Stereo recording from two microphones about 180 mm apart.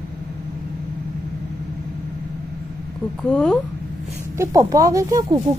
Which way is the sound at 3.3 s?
5° left (ahead or behind).